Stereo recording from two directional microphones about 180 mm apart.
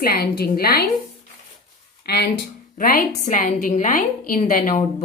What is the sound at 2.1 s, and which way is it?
Speech, 60° left (ahead or behind).